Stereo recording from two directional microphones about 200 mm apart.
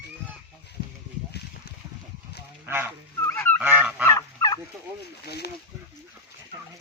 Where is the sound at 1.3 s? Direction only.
55° left (ahead or behind).